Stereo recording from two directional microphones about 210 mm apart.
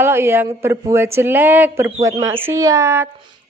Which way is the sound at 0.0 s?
10° right (ahead or behind).